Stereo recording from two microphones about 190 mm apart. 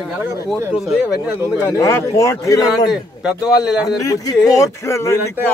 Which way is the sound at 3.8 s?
20° left (ahead or behind).